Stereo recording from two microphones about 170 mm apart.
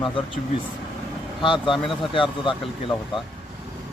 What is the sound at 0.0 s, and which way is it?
Speech, 30° left (ahead or behind).